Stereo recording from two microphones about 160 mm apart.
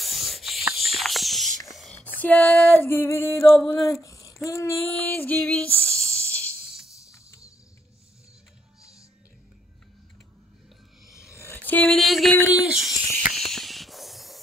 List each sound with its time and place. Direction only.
0.0 s a sound: centre (ahead or behind)
1.7 s whispering: centre (ahead or behind)
2.1 s music: 10° left (ahead or behind)
3.6 s speech: 20° left (ahead or behind)
4.5 s female singing: 20° left (ahead or behind)
7.1 s music: 20° left (ahead or behind)
11.1 s a sound: 15° left (ahead or behind); by 12.5 s centre (ahead or behind)
12.6 s speech: 5° right (ahead or behind)
13.2 s a sound: centre (ahead or behind)